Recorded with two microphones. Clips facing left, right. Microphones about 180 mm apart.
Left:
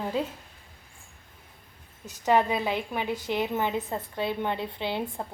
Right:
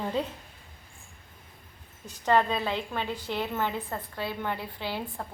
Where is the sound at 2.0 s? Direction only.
10° left (ahead or behind).